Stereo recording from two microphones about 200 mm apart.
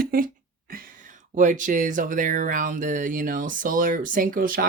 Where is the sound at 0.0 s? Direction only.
45° right (ahead or behind).